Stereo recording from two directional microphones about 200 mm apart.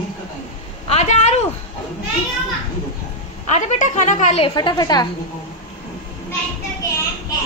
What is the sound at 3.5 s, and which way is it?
Speech, 35° left (ahead or behind).